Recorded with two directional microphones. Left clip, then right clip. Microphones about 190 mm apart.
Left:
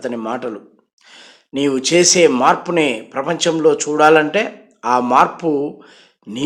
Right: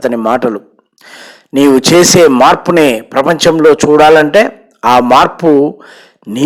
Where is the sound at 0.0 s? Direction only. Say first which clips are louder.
Right 12 dB; 40° right (ahead or behind).